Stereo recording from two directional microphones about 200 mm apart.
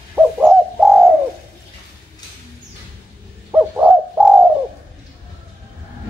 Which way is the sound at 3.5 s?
10° right (ahead or behind).